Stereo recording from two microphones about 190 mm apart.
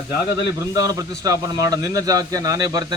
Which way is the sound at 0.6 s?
20° right (ahead or behind).